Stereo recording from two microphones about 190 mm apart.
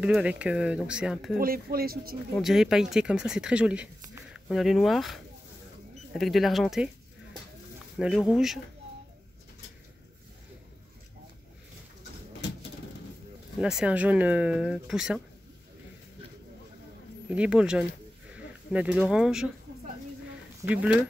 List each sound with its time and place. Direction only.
0.0 s speech: 5° right (ahead or behind)
1.4 s speech: 50° right (ahead or behind)
2.3 s speech: centre (ahead or behind)
8.0 s speech: 5° right (ahead or behind)
13.6 s speech: 5° right (ahead or behind)
17.3 s speech: 5° right (ahead or behind)
20.6 s speech: 5° right (ahead or behind)